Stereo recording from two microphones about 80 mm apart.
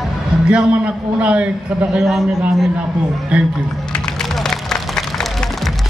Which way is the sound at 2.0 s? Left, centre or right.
Centre.